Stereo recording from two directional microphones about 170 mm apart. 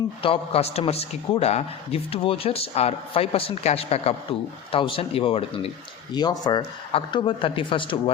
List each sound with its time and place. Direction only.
0.2 s a man's voice: 35° left (ahead or behind)